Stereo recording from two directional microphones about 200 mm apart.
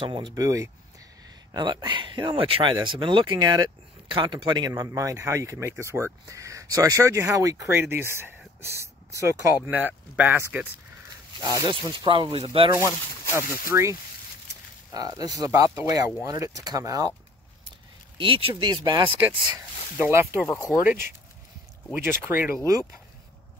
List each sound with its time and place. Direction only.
0.0 s speech: 25° right (ahead or behind)
13.7 s speech: 15° right (ahead or behind)
15.0 s speech: 20° right (ahead or behind)
18.1 s speech: 25° right (ahead or behind)
20.0 s speech: 15° right (ahead or behind)